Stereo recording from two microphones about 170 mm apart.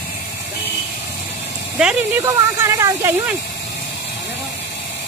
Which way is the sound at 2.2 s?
15° right (ahead or behind).